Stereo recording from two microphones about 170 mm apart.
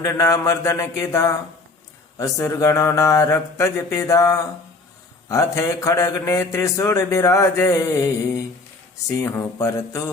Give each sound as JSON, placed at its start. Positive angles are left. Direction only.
{"t": 0.0, "sound": "mantra", "side_deg": 20}
{"t": 5.3, "sound": "speech", "side_deg": 20}
{"t": 9.2, "sound": "speech", "side_deg": 15}